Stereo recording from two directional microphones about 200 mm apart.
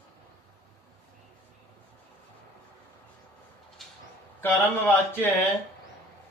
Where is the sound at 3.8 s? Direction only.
Centre (ahead or behind).